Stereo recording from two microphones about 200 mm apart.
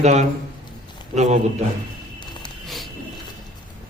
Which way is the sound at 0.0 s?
35° right (ahead or behind).